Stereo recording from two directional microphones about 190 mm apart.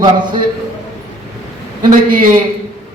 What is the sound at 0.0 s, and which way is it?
Speech, 20° right (ahead or behind).